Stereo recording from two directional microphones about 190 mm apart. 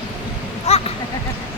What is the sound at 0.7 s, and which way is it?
Speech, 35° left (ahead or behind).